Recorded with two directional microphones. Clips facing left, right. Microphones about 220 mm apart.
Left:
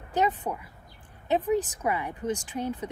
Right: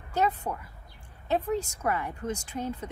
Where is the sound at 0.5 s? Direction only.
10° left (ahead or behind).